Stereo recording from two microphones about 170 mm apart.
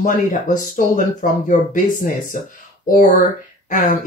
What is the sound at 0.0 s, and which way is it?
Speech, 50° left (ahead or behind).